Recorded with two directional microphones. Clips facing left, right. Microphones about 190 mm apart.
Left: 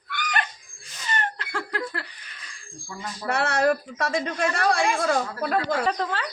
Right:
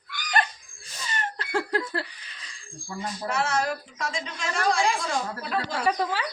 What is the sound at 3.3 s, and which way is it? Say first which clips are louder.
A woman's voice: left 5 dB; 60° left (ahead or behind).